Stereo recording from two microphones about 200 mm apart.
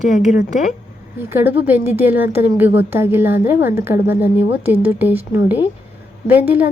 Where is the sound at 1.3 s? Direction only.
10° right (ahead or behind).